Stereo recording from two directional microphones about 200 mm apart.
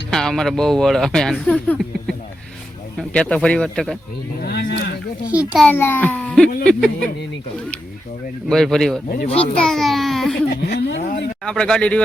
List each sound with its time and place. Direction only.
0.1 s speech: 5° left (ahead or behind)
4.4 s speech: 50° left (ahead or behind)
5.3 s a child's voice: 5° right (ahead or behind)
5.6 s a child's voice: 10° left (ahead or behind)
8.4 s a child's voice: centre (ahead or behind)
10.5 s speech: 55° left (ahead or behind)
11.4 s speech: 5° left (ahead or behind)